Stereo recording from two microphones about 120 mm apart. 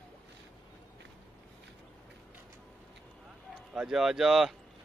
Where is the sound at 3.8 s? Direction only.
5° right (ahead or behind).